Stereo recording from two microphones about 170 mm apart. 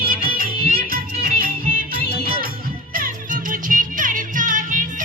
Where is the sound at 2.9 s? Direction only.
55° right (ahead or behind).